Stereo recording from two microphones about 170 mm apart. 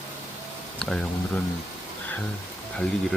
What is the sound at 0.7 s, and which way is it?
Speech, 5° left (ahead or behind).